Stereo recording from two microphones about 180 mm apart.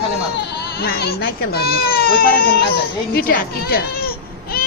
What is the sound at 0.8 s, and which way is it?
Speech, 60° left (ahead or behind).